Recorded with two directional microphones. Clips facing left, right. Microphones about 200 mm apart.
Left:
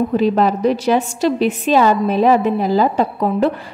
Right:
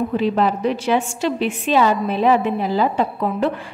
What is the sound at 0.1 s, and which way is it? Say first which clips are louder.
A woman's voice: left 3 dB; 40° left (ahead or behind).